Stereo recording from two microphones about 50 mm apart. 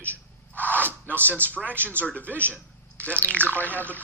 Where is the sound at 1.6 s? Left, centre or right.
Right.